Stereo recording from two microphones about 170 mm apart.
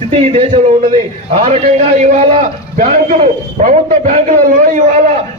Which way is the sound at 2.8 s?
55° right (ahead or behind).